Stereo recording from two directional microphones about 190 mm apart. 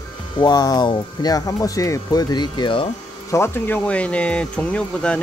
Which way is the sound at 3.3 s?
10° left (ahead or behind).